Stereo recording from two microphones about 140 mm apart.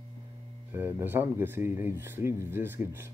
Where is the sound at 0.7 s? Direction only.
15° right (ahead or behind).